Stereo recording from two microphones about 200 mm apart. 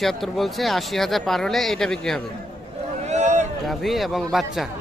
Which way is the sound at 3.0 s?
35° right (ahead or behind).